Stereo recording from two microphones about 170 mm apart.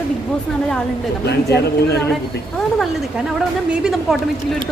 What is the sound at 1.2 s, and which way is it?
Speech, 75° left (ahead or behind).